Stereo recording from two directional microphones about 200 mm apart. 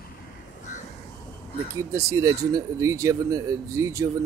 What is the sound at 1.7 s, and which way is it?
Speech, 15° right (ahead or behind).